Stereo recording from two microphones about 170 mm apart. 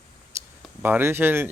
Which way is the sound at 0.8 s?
10° right (ahead or behind).